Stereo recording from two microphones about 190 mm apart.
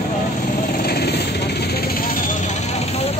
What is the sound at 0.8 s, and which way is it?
Vehicle, 55° left (ahead or behind).